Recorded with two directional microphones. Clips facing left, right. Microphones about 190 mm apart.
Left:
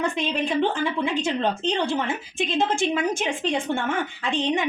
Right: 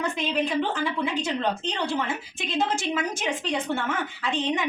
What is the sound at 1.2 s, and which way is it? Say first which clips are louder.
A woman's voice: left 3 dB; 25° left (ahead or behind).